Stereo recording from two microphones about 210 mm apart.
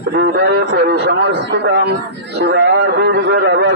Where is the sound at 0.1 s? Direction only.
55° right (ahead or behind).